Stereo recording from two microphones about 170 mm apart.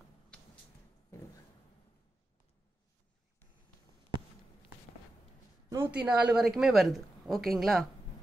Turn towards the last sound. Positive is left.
turn(degrees=0)  # may be behind; listen again after turning